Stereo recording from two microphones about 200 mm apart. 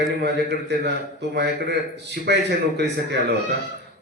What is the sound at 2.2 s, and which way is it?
A man's voice, 55° right (ahead or behind).